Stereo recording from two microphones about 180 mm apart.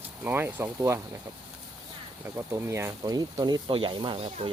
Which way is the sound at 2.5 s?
15° right (ahead or behind).